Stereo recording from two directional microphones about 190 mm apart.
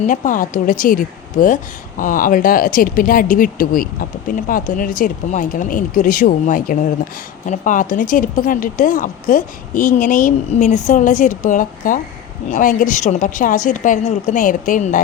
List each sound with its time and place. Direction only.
0.0 s speech: 45° left (ahead or behind)